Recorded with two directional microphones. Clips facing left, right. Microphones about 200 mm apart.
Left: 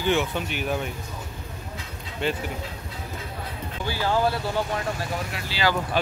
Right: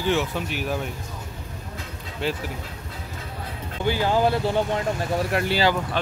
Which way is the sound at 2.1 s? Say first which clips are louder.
Even; centre (ahead or behind).